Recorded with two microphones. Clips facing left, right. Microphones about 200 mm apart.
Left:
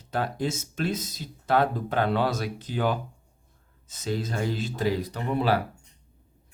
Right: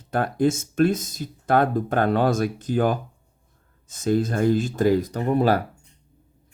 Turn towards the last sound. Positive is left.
turn(degrees=-45)  # may be behind; listen again after turning